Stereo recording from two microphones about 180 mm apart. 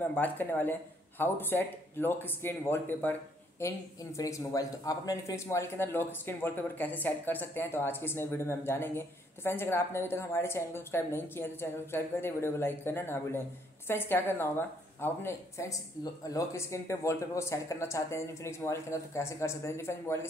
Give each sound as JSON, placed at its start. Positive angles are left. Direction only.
{"t": 0.0, "sound": "speech", "side_deg": 10}